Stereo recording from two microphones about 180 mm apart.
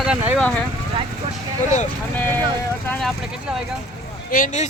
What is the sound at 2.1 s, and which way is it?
Speech, 10° left (ahead or behind).